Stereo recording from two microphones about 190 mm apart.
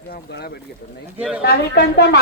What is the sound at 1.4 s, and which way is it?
Speech, 60° left (ahead or behind).